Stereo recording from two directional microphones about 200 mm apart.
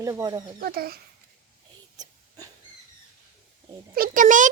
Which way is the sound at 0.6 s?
50° right (ahead or behind).